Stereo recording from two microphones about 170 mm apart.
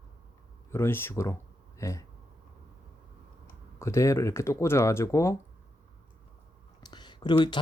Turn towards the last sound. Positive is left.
turn(degrees=25)  # may be behind; listen again after turning